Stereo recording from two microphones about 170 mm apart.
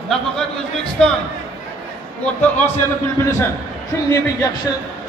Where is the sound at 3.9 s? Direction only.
15° left (ahead or behind).